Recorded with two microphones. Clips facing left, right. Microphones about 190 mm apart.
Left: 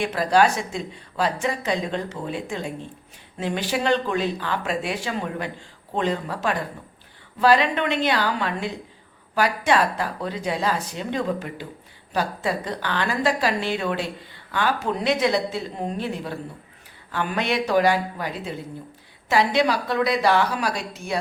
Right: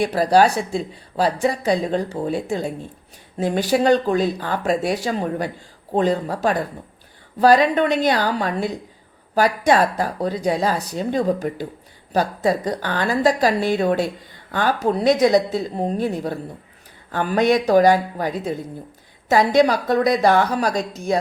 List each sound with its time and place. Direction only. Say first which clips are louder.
0.0 s a woman's voice: right 4 dB; 35° right (ahead or behind)